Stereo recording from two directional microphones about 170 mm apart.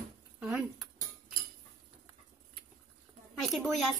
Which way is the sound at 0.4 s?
5° right (ahead or behind).